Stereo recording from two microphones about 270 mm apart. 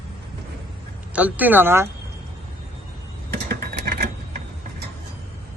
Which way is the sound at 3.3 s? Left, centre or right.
Right.